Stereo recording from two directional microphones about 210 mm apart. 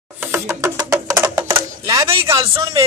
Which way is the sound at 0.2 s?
10° right (ahead or behind).